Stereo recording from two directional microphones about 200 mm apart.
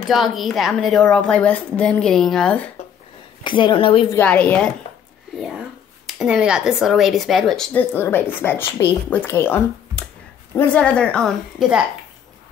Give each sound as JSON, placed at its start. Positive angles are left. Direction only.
{"t": 0.1, "sound": "speech", "side_deg": 0}
{"t": 3.4, "sound": "a woman's voice", "side_deg": 25}
{"t": 4.2, "sound": "a woman's voice", "side_deg": 5}
{"t": 6.0, "sound": "speech", "side_deg": 0}